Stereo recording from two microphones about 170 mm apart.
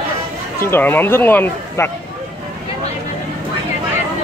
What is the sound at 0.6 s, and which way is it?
Speech, 15° left (ahead or behind).